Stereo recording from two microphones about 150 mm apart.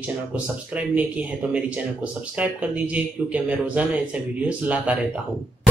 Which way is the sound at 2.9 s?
10° right (ahead or behind).